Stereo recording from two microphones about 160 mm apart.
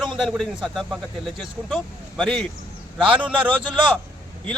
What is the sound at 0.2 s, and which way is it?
Speech, centre (ahead or behind).